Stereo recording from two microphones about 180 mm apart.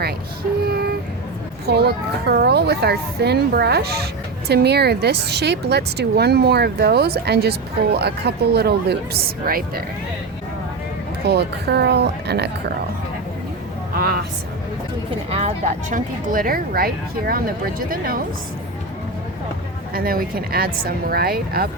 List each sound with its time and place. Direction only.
0.6 s a sound: 60° right (ahead or behind)
1.6 s speech: 65° right (ahead or behind)
11.3 s speech: 65° right (ahead or behind)
13.9 s speech: 60° right (ahead or behind)
15.3 s speech: 35° right (ahead or behind); by 18.2 s 55° right (ahead or behind)
19.9 s speech: 55° right (ahead or behind)